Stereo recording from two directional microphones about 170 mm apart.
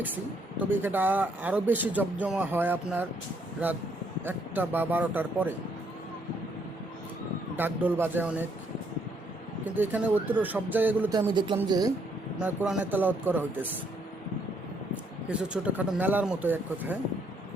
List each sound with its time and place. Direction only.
0.0 s speech: 10° right (ahead or behind)
4.3 s speech: 10° right (ahead or behind)
7.5 s speech: 10° right (ahead or behind)
9.7 s speech: 10° right (ahead or behind)
11.3 s speech: 30° right (ahead or behind)
12.4 s speech: 10° right (ahead or behind)
15.3 s speech: 5° right (ahead or behind)